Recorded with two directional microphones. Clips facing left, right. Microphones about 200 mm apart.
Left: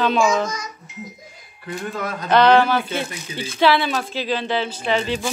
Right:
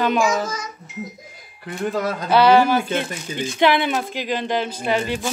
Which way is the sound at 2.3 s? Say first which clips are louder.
Even; 10° right (ahead or behind).